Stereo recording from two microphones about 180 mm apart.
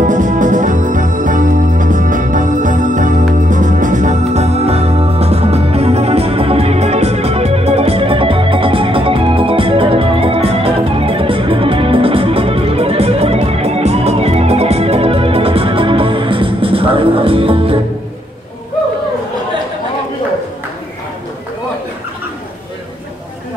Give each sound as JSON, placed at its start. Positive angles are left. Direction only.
{"t": 0.0, "sound": "music", "side_deg": -45}